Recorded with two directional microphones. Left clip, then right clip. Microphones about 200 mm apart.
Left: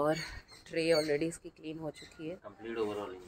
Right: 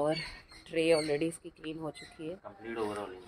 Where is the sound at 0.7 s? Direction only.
15° right (ahead or behind).